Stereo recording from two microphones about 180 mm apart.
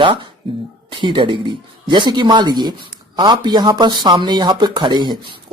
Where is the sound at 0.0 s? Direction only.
25° right (ahead or behind).